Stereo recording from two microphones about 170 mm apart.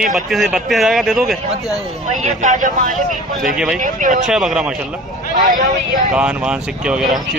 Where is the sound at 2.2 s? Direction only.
50° right (ahead or behind).